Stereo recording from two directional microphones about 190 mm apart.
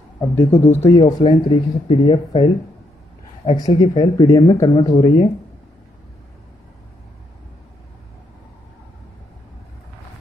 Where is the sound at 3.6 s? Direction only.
25° left (ahead or behind).